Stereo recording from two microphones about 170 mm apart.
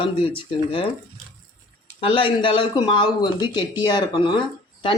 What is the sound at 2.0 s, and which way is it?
Speech, 30° left (ahead or behind).